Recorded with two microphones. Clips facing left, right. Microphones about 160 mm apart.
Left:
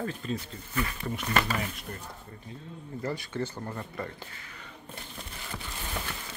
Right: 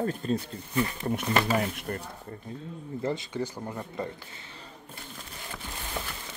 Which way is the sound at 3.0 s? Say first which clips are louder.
Right 2 dB; 20° right (ahead or behind).